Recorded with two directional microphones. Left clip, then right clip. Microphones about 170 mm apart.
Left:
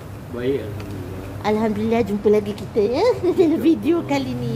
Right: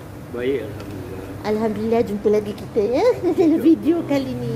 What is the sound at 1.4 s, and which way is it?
A woman's voice, 20° left (ahead or behind).